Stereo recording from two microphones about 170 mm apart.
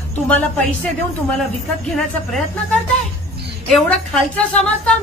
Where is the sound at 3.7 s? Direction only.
5° left (ahead or behind).